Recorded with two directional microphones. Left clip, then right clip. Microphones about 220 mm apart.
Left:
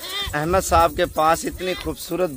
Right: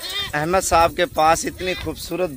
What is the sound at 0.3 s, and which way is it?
Speech, 10° right (ahead or behind).